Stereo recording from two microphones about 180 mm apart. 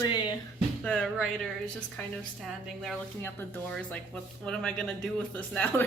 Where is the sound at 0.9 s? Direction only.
5° left (ahead or behind).